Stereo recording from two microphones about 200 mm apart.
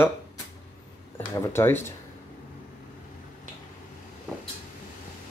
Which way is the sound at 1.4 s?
10° left (ahead or behind).